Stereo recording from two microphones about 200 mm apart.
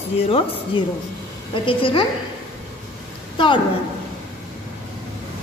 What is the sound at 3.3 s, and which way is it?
Speech, 25° left (ahead or behind).